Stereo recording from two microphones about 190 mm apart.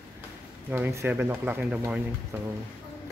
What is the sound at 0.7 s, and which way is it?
Speech, 15° right (ahead or behind).